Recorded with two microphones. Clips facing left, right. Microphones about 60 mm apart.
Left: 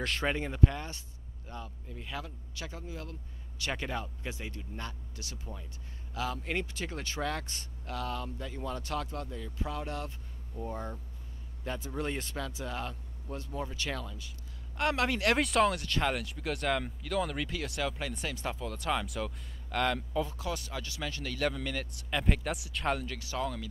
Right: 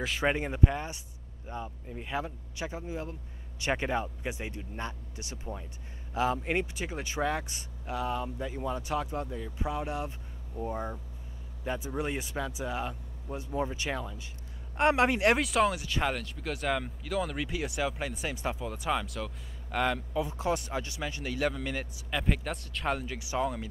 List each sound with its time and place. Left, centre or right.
0.0 s speech: centre
0.3 s a man's voice: centre
15.3 s speech: centre
19.0 s speech: centre
19.7 s speech: centre
20.2 s speech: right; by 22.9 s centre
22.9 s speech: centre